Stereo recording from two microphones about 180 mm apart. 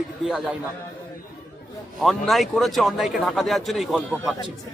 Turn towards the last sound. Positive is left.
turn(degrees=0)  # may be behind; listen again after turning